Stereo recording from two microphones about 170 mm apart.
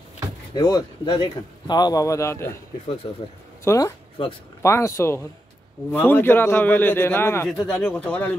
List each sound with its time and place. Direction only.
0.6 s speech: 25° left (ahead or behind)
3.6 s a man's voice: 20° left (ahead or behind)